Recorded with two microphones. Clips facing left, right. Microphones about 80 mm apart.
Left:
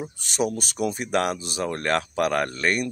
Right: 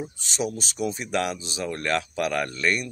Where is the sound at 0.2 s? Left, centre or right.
Left.